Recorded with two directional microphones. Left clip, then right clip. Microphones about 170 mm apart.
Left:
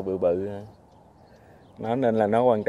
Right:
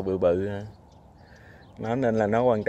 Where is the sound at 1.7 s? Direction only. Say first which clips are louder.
Left 2 dB; 10° left (ahead or behind).